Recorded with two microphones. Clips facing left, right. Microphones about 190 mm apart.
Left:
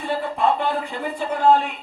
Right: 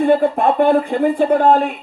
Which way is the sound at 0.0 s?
55° right (ahead or behind).